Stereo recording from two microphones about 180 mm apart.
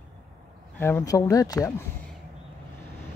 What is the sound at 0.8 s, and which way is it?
Speech, 15° left (ahead or behind).